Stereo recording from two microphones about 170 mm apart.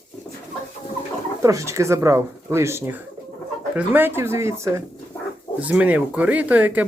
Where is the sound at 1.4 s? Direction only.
15° right (ahead or behind).